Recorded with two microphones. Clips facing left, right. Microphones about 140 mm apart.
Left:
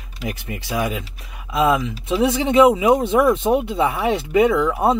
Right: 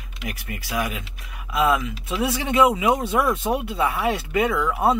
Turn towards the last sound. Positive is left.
turn(degrees=20)  # may be behind; listen again after turning